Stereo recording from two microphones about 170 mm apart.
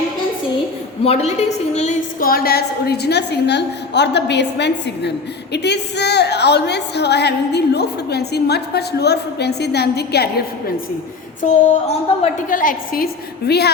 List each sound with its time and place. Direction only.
1.0 s a woman's voice: 35° left (ahead or behind)
2.2 s a woman's voice: 60° left (ahead or behind)
11.9 s a woman's voice: 45° left (ahead or behind); by 13.7 s 70° left (ahead or behind)